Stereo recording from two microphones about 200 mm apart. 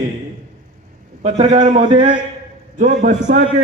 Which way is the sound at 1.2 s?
35° right (ahead or behind).